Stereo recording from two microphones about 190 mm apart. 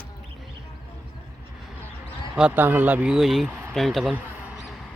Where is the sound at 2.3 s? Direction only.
5° right (ahead or behind).